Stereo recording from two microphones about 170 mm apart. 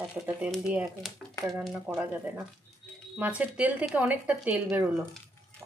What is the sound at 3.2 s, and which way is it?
Speech, 10° right (ahead or behind).